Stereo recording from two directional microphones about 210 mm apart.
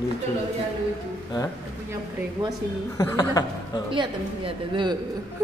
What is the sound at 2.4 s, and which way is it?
Speech, 20° right (ahead or behind).